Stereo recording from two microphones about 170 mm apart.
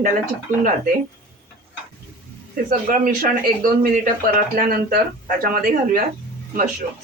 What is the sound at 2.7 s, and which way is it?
Speech, 55° right (ahead or behind).